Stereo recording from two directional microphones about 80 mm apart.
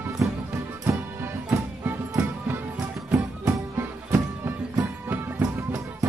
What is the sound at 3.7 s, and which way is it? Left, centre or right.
Music, right.